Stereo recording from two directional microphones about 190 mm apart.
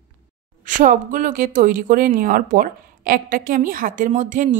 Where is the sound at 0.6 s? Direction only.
45° right (ahead or behind).